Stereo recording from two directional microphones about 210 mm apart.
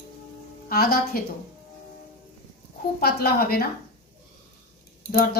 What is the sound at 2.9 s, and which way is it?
Speech, 45° left (ahead or behind).